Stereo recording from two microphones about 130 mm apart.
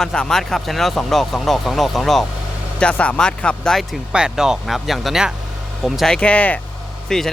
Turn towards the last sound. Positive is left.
turn(degrees=5)  # may be behind; listen again after turning